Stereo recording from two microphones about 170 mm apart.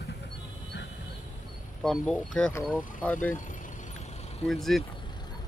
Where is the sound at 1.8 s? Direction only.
5° left (ahead or behind).